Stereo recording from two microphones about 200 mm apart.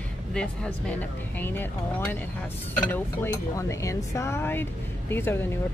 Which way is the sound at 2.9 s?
15° left (ahead or behind).